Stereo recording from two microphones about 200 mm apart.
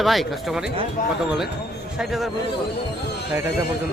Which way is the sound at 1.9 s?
Centre (ahead or behind).